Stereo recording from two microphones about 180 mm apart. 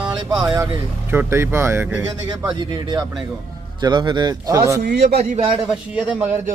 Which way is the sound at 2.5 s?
25° right (ahead or behind).